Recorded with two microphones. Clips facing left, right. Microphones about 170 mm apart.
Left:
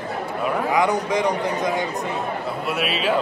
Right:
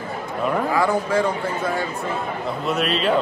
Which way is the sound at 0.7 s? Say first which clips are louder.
Left 1 dB; 15° left (ahead or behind).